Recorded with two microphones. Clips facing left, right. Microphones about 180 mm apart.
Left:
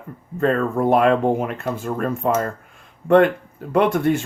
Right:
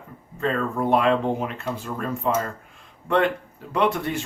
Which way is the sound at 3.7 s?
50° left (ahead or behind).